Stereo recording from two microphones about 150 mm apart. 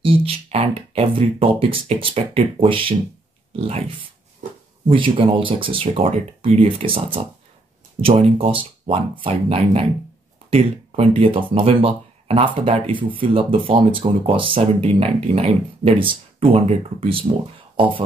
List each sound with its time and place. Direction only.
0.0 s speech: 40° right (ahead or behind)